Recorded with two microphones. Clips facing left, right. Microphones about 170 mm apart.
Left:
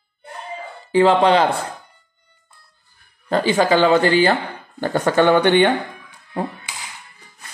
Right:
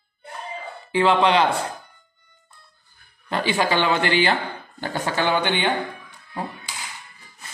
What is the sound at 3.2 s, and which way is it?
A woman's voice, 40° left (ahead or behind).